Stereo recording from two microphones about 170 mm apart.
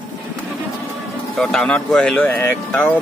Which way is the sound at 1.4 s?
5° left (ahead or behind).